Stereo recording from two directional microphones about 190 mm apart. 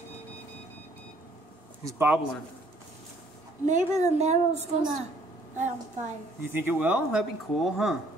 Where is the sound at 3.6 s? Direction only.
40° right (ahead or behind).